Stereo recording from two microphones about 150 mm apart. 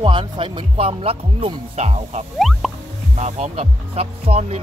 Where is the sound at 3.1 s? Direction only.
45° right (ahead or behind).